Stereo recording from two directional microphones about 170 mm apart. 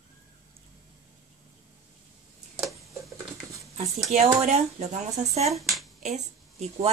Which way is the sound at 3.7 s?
40° right (ahead or behind).